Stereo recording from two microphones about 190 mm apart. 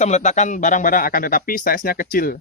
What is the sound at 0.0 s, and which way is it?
Speech, 35° left (ahead or behind).